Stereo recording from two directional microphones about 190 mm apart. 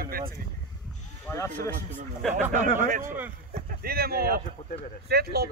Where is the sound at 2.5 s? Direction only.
45° right (ahead or behind).